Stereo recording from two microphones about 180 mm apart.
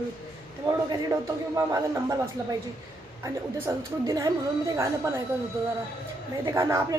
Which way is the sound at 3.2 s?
15° right (ahead or behind).